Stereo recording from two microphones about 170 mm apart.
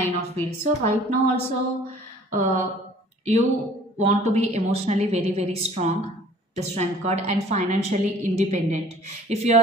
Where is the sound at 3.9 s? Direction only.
40° right (ahead or behind).